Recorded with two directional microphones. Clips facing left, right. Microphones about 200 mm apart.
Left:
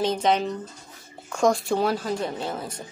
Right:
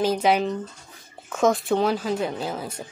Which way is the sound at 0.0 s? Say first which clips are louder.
Right 2 dB; 5° right (ahead or behind).